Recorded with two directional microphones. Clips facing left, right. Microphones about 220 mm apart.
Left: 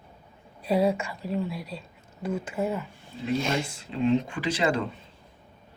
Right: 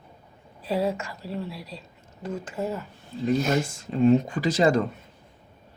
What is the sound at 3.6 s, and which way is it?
Speech, 45° right (ahead or behind).